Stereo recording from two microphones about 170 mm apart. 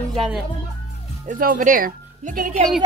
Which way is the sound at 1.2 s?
55° right (ahead or behind).